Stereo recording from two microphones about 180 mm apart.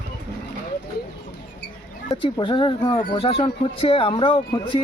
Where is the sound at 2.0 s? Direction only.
25° left (ahead or behind).